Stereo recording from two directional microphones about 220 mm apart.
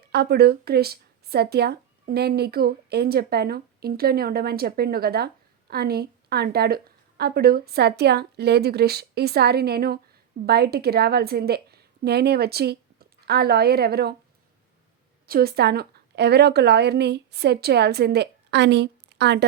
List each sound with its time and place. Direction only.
0.1 s a woman's voice: 45° right (ahead or behind)
15.3 s speech: 45° right (ahead or behind)